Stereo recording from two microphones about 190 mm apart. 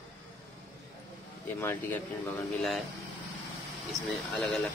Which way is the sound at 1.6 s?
10° left (ahead or behind).